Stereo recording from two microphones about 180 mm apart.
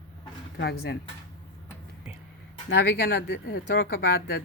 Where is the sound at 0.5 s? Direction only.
65° left (ahead or behind).